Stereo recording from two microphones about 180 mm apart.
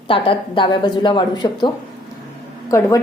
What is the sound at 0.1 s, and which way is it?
A woman's voice, 30° left (ahead or behind).